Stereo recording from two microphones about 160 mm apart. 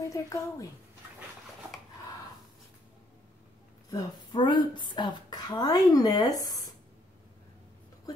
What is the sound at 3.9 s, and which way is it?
A woman's voice, 30° left (ahead or behind).